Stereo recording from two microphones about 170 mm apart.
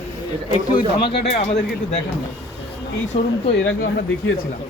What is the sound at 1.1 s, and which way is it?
Speech, 35° left (ahead or behind).